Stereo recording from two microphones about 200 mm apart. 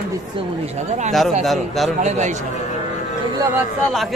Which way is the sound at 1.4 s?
Centre (ahead or behind).